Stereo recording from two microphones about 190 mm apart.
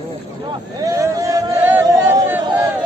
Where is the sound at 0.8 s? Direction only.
20° right (ahead or behind).